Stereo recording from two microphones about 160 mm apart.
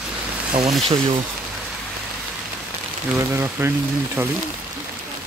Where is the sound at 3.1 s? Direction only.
15° right (ahead or behind).